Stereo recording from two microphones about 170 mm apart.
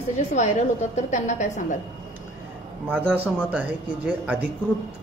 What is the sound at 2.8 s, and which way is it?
A man's voice, 10° right (ahead or behind).